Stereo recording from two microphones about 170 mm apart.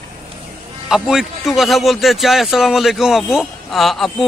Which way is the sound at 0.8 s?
5° right (ahead or behind).